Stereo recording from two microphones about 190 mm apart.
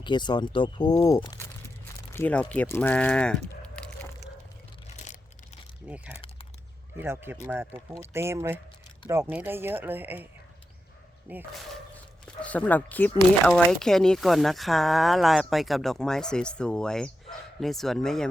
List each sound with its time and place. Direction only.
0.0 s speech: 25° left (ahead or behind)
2.1 s speech: 10° left (ahead or behind)
3.6 s a sound: 5° left (ahead or behind)
7.0 s speech: 10° right (ahead or behind)
11.3 s speech: 10° right (ahead or behind)
12.4 s speech: 10° left (ahead or behind)